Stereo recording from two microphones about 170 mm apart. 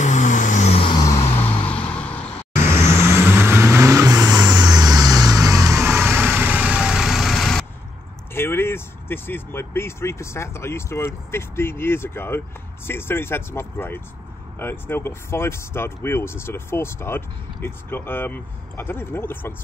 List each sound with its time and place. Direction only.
0.0 s vehicle: 45° left (ahead or behind)
1.6 s vehicle: 5° left (ahead or behind)
2.5 s vehicle: 15° right (ahead or behind); by 7.6 s centre (ahead or behind)
8.4 s speech: 15° left (ahead or behind)